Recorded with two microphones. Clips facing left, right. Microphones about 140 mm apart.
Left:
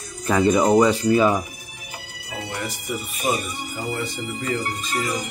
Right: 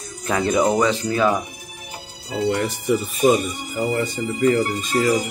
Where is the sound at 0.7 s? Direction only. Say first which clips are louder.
Left 3 dB; 10° left (ahead or behind).